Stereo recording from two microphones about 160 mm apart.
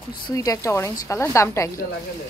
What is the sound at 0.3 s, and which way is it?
Speech, 20° left (ahead or behind).